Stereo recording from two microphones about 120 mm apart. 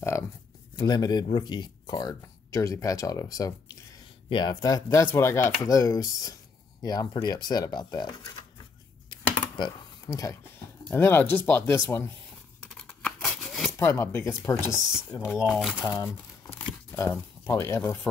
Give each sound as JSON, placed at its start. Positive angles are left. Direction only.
{"t": 0.7, "sound": "speech", "side_deg": 35}
{"t": 9.1, "sound": "computer keyboard", "side_deg": 35}
{"t": 10.9, "sound": "speech", "side_deg": 15}
{"t": 12.7, "sound": "scissors", "side_deg": 10}
{"t": 13.4, "sound": "a sound", "side_deg": 0}
{"t": 13.7, "sound": "speech", "side_deg": 20}
{"t": 14.7, "sound": "speech", "side_deg": -5}
{"t": 15.8, "sound": "speech", "side_deg": 25}